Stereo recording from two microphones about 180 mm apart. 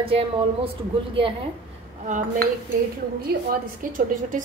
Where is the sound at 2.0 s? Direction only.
45° right (ahead or behind).